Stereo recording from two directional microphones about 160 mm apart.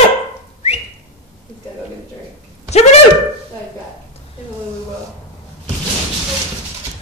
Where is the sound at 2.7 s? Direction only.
45° left (ahead or behind).